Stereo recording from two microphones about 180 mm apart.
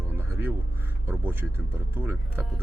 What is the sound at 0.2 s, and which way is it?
Music, 10° right (ahead or behind).